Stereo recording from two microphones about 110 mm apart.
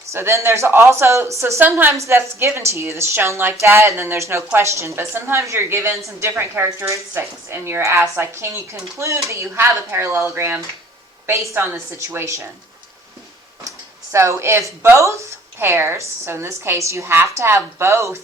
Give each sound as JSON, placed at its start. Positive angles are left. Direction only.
{"t": 0.1, "sound": "a woman's voice", "side_deg": -25}
{"t": 13.7, "sound": "a woman's voice", "side_deg": -25}